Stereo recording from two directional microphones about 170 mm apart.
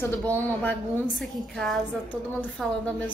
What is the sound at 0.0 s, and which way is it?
A woman's voice, 10° left (ahead or behind).